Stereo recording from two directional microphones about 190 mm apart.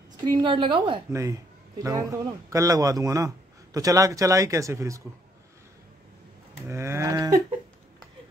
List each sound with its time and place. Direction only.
0.2 s a woman's voice: 25° right (ahead or behind)
6.7 s a woman's voice: 15° right (ahead or behind)